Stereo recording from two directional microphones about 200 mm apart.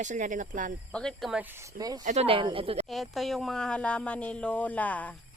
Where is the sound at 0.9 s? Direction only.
5° left (ahead or behind); by 2.0 s 20° right (ahead or behind).